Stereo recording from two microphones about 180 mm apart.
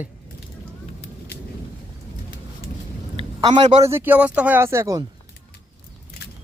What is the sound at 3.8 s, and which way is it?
Speech, 15° right (ahead or behind).